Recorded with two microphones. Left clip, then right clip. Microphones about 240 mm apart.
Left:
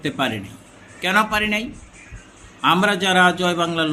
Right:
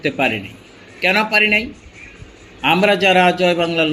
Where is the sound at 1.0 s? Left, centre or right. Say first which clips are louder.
Right 4 dB; left.